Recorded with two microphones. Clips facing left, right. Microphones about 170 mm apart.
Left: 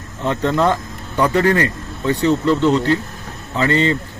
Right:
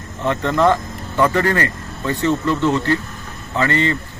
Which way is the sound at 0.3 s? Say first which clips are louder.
Right 1 dB; 15° left (ahead or behind).